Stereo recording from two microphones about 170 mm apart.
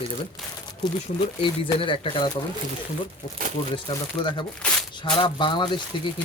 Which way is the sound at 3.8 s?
30° left (ahead or behind).